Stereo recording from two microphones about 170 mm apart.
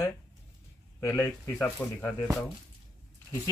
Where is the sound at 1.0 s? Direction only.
20° left (ahead or behind).